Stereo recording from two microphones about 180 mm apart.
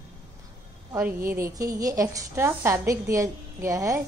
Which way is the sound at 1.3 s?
15° right (ahead or behind).